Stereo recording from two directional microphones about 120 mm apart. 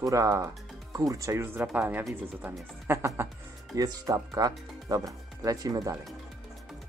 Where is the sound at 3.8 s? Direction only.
30° right (ahead or behind).